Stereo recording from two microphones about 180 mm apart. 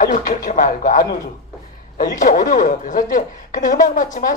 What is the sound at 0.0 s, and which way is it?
A woman's voice, 45° left (ahead or behind).